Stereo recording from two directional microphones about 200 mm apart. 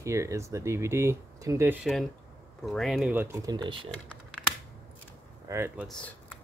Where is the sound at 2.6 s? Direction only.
Centre (ahead or behind); by 3.9 s 25° right (ahead or behind).